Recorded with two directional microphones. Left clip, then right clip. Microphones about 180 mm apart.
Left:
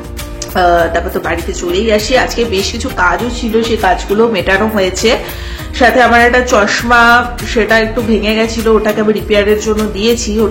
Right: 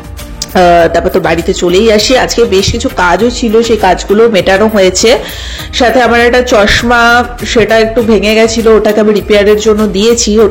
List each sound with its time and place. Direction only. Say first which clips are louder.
0.6 s speech: right 5 dB; 45° right (ahead or behind)